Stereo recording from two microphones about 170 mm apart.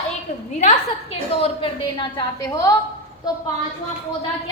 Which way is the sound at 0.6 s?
40° left (ahead or behind).